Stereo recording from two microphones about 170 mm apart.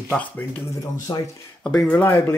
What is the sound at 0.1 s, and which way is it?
Speech, 10° left (ahead or behind).